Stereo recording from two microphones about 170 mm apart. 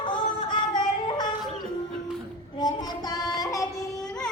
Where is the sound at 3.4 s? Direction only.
20° left (ahead or behind).